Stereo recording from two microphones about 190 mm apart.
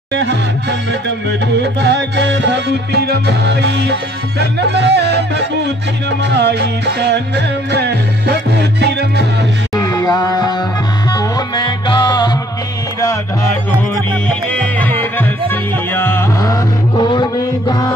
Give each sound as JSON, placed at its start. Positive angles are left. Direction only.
{"t": 0.1, "sound": "music", "side_deg": -65}
{"t": 9.8, "sound": "music", "side_deg": 20}
{"t": 14.5, "sound": "music", "side_deg": 10}